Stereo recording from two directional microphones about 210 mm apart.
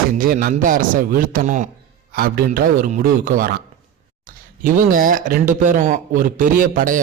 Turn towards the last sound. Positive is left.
turn(degrees=-40)  # may be behind; listen again after turning